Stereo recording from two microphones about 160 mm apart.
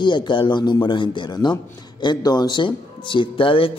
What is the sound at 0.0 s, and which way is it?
A man's voice, 30° left (ahead or behind).